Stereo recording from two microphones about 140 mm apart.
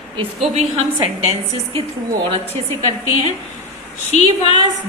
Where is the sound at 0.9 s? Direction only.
40° right (ahead or behind).